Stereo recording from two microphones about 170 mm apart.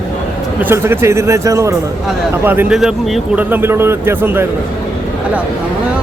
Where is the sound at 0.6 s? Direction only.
15° right (ahead or behind).